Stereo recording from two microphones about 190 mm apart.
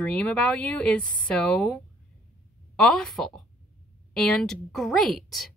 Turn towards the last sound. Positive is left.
turn(degrees=0)  # may be behind; listen again after turning